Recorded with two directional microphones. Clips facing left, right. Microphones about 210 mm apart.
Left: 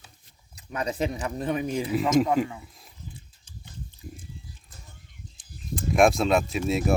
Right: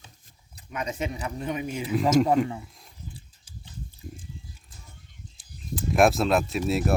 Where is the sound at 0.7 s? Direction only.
35° left (ahead or behind).